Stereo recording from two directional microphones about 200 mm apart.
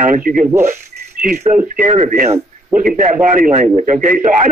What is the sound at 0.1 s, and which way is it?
Speech, 45° right (ahead or behind).